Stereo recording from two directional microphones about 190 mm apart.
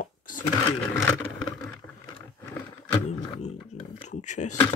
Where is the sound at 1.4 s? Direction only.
Centre (ahead or behind).